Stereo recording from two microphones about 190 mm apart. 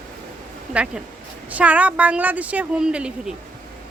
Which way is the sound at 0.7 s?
5° right (ahead or behind).